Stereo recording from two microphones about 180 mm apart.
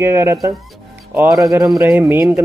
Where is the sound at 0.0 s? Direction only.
15° right (ahead or behind).